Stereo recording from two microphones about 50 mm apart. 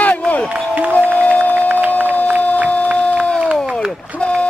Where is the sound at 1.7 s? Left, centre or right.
Right.